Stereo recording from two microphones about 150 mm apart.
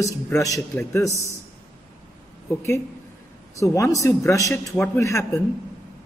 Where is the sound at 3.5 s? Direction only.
20° left (ahead or behind).